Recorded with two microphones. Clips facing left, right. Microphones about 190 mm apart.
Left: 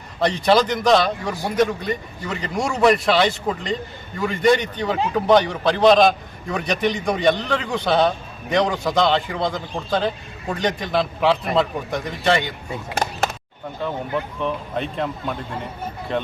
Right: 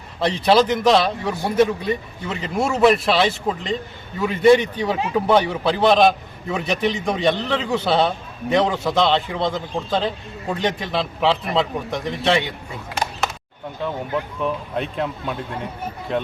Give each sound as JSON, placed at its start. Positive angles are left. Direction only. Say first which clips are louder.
{"t": 0.2, "sound": "a man's voice", "louder": "right 1 dB", "side_deg": -5}
{"t": 14.4, "sound": "a man's voice", "louder": "right 1 dB", "side_deg": 0}